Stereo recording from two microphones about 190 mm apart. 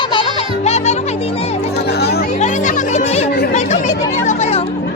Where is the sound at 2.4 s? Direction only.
40° left (ahead or behind).